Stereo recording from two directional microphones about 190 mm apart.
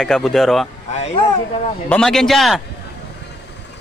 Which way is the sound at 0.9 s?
35° left (ahead or behind).